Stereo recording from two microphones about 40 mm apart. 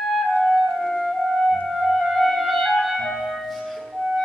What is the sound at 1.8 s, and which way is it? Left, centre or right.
Music, centre.